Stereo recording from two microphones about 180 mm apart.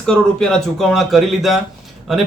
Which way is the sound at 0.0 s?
5° left (ahead or behind).